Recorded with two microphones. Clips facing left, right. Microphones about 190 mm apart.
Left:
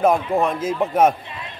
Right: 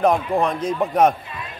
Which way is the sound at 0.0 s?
Centre (ahead or behind).